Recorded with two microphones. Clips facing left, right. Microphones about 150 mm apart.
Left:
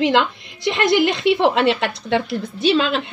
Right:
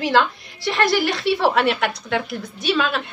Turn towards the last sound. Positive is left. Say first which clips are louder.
# left 4 dB
turn(degrees=25)  # may be behind; listen again after turning